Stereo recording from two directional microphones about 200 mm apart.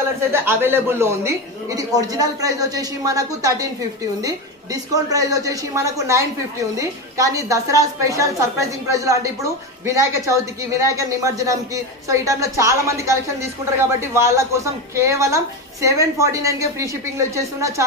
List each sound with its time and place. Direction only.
0.3 s a woman's voice: 10° right (ahead or behind)